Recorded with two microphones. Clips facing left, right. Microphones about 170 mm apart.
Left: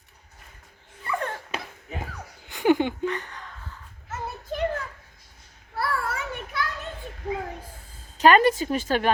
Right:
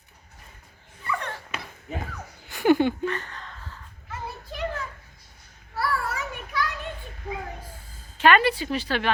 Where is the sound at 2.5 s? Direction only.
15° left (ahead or behind).